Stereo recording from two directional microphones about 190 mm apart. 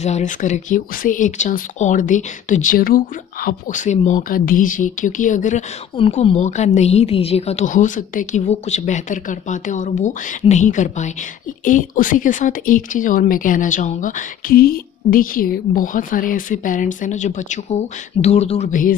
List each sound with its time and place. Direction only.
0.0 s speech: 40° left (ahead or behind)
5.9 s speech: 30° left (ahead or behind); by 18.9 s 45° left (ahead or behind)